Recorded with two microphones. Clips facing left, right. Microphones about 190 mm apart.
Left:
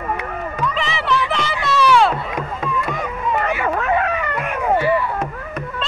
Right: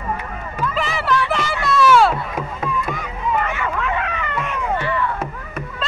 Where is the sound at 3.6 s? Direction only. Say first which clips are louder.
Left 4 dB; 45° left (ahead or behind).